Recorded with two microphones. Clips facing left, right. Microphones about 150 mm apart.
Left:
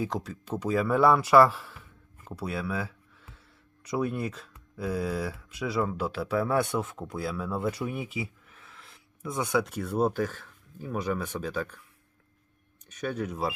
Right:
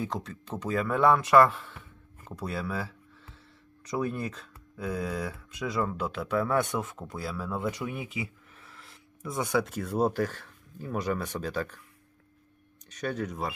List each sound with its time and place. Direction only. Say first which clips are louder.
0.0 s speech: left 2 dB; 10° left (ahead or behind)
13.1 s speech: left 1 dB; 10° left (ahead or behind)